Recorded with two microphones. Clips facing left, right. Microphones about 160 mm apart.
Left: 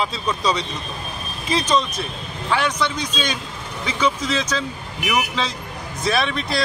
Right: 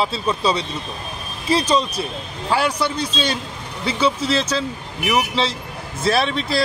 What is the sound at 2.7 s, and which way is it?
Speech, 10° right (ahead or behind).